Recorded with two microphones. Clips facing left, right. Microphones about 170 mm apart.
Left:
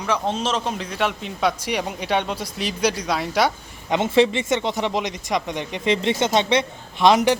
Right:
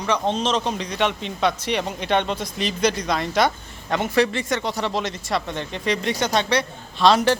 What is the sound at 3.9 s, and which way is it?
Speech, 25° left (ahead or behind).